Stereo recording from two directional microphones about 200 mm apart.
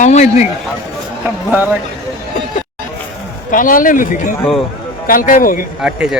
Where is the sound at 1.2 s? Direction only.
10° right (ahead or behind).